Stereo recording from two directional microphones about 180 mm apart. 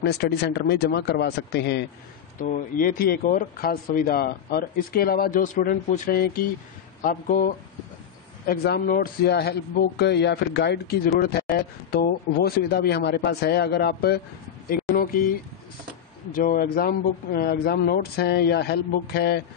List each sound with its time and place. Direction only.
0.0 s speech: 65° left (ahead or behind)
2.4 s speech: 45° left (ahead or behind)
8.5 s speech: 60° left (ahead or behind)
14.7 s a sound: 55° left (ahead or behind)
16.3 s speech: 50° left (ahead or behind)